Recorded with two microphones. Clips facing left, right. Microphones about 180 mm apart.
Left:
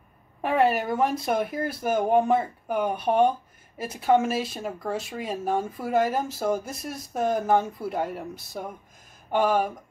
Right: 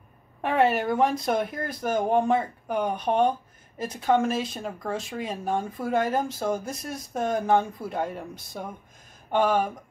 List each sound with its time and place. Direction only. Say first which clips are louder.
0.4 s speech: even; centre (ahead or behind)